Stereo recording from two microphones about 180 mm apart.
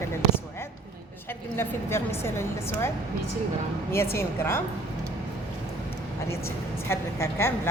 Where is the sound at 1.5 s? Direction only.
15° left (ahead or behind).